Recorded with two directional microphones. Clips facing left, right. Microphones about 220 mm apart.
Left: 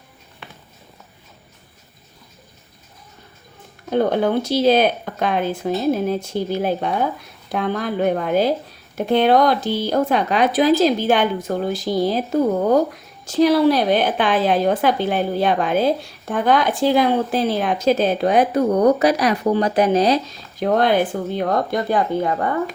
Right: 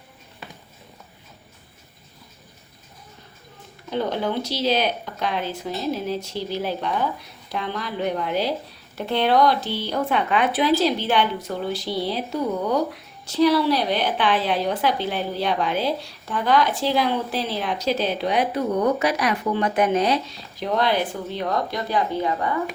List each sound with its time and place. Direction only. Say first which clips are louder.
3.8 s speech: left 7 dB; 50° left (ahead or behind)